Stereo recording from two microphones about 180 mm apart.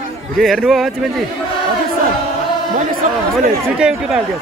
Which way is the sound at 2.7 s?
45° right (ahead or behind).